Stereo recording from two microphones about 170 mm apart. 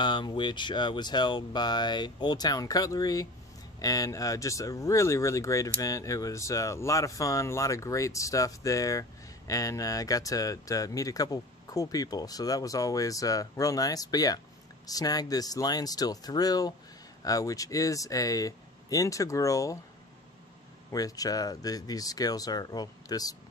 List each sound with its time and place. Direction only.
0.0 s speech: 25° left (ahead or behind)
20.9 s speech: 20° left (ahead or behind)